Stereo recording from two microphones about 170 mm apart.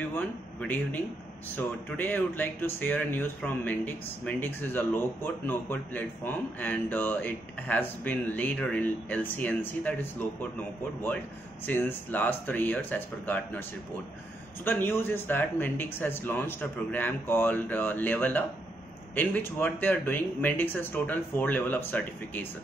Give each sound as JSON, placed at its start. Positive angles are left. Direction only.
{"t": 0.1, "sound": "speech", "side_deg": 10}
{"t": 11.6, "sound": "speech", "side_deg": 10}